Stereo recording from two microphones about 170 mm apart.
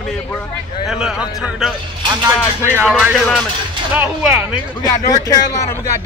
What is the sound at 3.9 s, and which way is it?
Speech, 10° right (ahead or behind).